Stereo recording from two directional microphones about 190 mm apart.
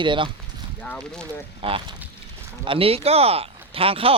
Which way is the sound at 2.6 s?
30° right (ahead or behind).